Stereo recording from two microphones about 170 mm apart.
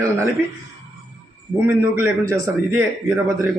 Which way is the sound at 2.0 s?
15° right (ahead or behind).